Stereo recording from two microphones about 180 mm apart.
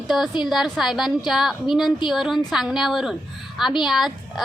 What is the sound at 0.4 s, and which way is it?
A woman's voice, centre (ahead or behind).